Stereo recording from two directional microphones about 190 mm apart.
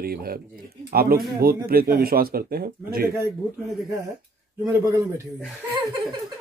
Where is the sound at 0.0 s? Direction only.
50° right (ahead or behind).